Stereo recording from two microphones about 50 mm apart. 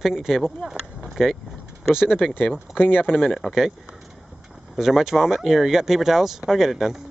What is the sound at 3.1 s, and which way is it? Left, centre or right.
Speech, centre.